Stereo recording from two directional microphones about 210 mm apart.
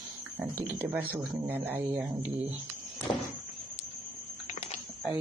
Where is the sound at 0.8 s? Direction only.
10° right (ahead or behind).